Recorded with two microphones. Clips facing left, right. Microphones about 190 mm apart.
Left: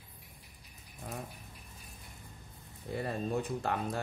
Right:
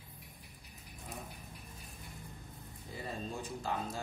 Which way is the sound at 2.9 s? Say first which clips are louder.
Left 8 dB; 60° left (ahead or behind).